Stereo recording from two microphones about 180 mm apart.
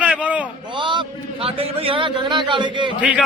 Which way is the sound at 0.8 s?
25° right (ahead or behind).